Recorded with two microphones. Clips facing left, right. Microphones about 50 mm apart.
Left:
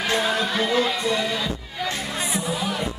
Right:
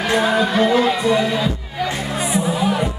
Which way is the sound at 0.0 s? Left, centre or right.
Centre.